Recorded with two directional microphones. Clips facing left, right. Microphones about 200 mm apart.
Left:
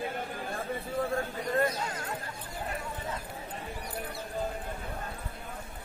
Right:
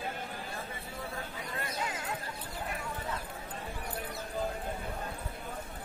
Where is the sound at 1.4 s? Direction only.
45° left (ahead or behind).